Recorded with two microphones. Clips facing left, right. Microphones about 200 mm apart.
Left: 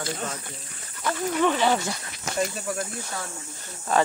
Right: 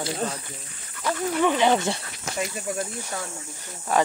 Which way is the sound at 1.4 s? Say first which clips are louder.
Right 2 dB; 15° right (ahead or behind).